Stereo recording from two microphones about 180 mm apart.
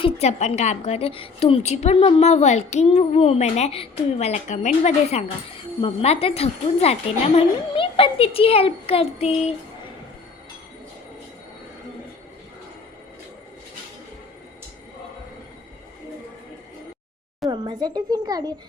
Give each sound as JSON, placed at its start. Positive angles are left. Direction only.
{"t": 0.0, "sound": "a woman's voice", "side_deg": 35}
{"t": 17.5, "sound": "speech", "side_deg": -25}